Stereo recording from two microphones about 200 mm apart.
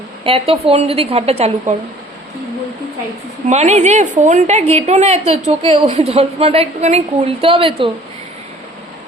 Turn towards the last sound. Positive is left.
turn(degrees=-25)  # may be behind; listen again after turning